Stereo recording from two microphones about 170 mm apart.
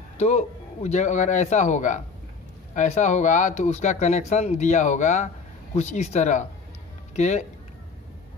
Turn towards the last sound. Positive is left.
turn(degrees=45)  # may be behind; listen again after turning